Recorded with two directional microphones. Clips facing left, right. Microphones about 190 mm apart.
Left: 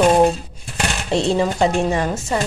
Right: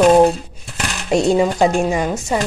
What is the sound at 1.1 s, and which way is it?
A woman's voice, 15° right (ahead or behind).